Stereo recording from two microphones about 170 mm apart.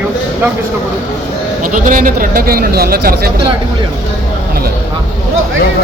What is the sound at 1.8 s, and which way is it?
Speech, 55° right (ahead or behind).